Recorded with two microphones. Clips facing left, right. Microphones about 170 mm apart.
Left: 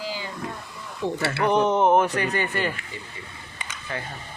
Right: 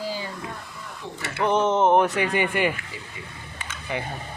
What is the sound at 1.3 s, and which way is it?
Speech, centre (ahead or behind).